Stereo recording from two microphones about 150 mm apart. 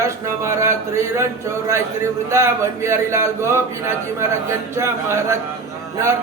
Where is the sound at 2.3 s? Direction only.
20° right (ahead or behind).